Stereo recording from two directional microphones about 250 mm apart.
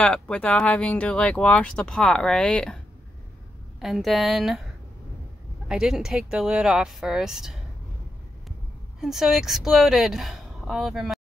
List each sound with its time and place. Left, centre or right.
0.0 s speech: centre
3.8 s speech: centre
5.7 s speech: centre
9.0 s speech: centre